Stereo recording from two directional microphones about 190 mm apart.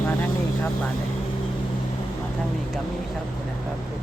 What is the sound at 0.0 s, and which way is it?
Vehicle, 10° left (ahead or behind).